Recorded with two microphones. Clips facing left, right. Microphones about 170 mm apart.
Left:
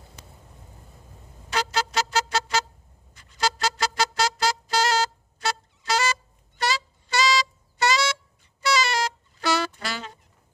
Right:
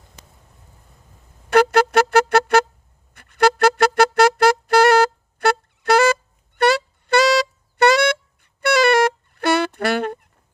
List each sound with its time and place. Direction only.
1.5 s music: 60° right (ahead or behind)